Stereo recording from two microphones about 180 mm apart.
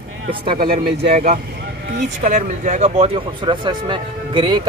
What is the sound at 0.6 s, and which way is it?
Speech, 60° right (ahead or behind).